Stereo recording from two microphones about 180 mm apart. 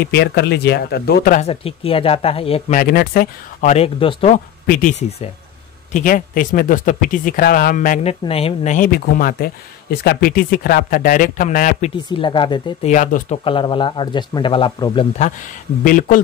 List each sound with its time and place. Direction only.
0.1 s speech: 65° left (ahead or behind)
1.4 s speech: 30° left (ahead or behind)
2.7 s speech: 55° left (ahead or behind)
3.6 s speech: 35° left (ahead or behind)
4.3 s speech: 50° left (ahead or behind)
9.0 s speech: 55° left (ahead or behind)
12.2 s speech: 25° left (ahead or behind)
12.8 s speech: 45° left (ahead or behind)
13.4 s speech: 30° left (ahead or behind)
15.1 s speech: 45° left (ahead or behind)